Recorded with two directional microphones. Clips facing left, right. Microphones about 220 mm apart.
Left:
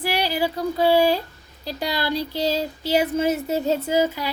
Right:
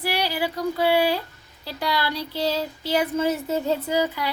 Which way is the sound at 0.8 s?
40° left (ahead or behind).